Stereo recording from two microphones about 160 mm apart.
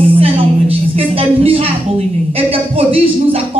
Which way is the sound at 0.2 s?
35° right (ahead or behind).